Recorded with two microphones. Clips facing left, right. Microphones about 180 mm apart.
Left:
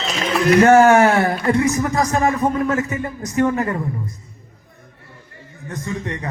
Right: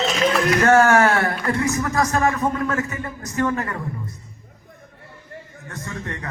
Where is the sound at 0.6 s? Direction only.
20° left (ahead or behind).